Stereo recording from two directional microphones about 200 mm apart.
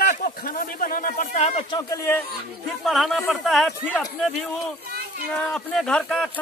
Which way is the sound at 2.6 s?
Centre (ahead or behind).